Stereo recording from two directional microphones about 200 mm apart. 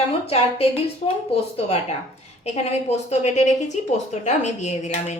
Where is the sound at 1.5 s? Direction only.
30° left (ahead or behind).